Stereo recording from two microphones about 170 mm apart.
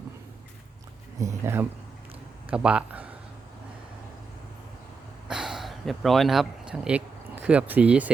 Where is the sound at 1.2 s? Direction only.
15° right (ahead or behind).